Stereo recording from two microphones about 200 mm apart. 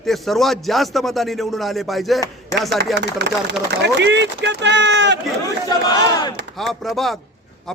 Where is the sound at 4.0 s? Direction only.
60° right (ahead or behind).